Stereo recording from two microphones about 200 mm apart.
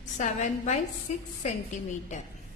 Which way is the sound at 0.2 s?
40° left (ahead or behind).